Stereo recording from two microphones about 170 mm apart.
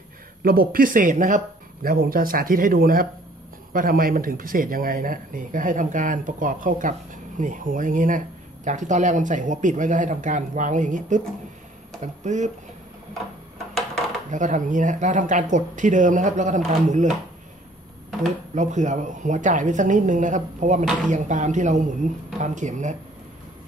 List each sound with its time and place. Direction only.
0.4 s speech: 60° right (ahead or behind)
14.3 s speech: 50° right (ahead or behind)
18.5 s speech: 45° right (ahead or behind)